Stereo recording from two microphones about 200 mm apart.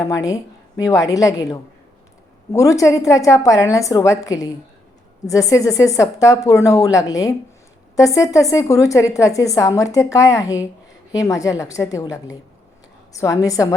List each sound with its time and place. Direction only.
0.0 s a woman's voice: 15° left (ahead or behind)